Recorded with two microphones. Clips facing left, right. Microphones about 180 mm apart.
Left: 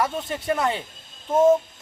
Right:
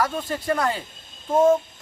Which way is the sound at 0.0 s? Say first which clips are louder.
Right 1 dB; 20° left (ahead or behind).